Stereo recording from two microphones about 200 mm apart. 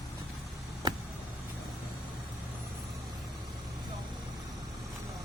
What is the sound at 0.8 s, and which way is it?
Vehicle, 20° right (ahead or behind).